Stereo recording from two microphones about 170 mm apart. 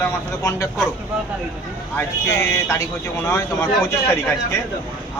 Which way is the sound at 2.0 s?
15° left (ahead or behind).